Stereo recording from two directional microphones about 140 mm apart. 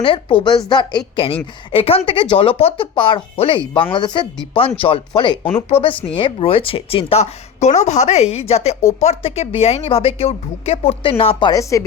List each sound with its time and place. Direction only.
0.0 s a woman's voice: 40° left (ahead or behind)